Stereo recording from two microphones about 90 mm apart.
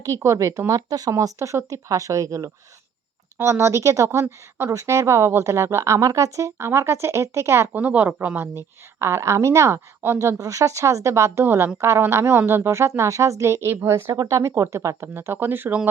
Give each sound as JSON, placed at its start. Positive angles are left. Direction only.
{"t": 0.2, "sound": "speech", "side_deg": -35}
{"t": 7.7, "sound": "speech", "side_deg": -20}
{"t": 8.5, "sound": "speech", "side_deg": -30}